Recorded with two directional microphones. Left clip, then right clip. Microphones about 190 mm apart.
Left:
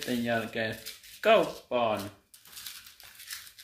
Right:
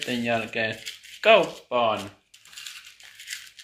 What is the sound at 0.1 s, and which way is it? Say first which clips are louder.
Speech: right 4 dB; 15° left (ahead or behind).